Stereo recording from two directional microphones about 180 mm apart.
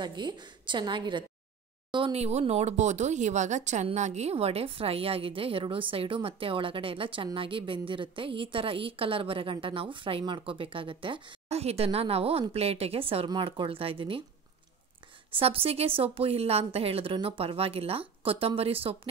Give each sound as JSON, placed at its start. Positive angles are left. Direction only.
{"t": 0.0, "sound": "a woman's voice", "side_deg": -25}
{"t": 15.3, "sound": "speech", "side_deg": -30}